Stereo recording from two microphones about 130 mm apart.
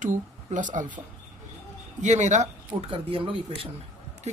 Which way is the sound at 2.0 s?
65° right (ahead or behind).